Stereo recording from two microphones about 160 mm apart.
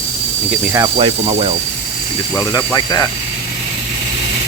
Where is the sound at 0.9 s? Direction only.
35° right (ahead or behind).